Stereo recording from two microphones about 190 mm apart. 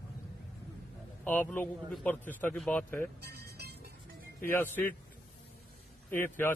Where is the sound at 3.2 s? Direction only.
55° right (ahead or behind).